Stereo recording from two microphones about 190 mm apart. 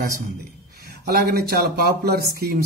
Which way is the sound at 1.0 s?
55° right (ahead or behind).